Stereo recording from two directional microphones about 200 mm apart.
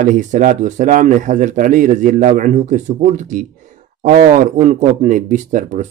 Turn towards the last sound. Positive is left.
turn(degrees=-40)  # may be behind; listen again after turning